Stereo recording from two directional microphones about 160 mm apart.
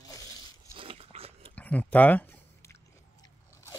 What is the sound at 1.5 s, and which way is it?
Biting, 10° left (ahead or behind).